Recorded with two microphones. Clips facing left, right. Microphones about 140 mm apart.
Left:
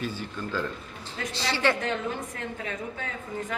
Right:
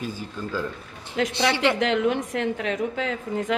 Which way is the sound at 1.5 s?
15° right (ahead or behind).